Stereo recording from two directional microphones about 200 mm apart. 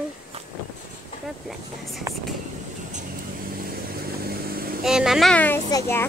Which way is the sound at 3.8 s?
50° right (ahead or behind).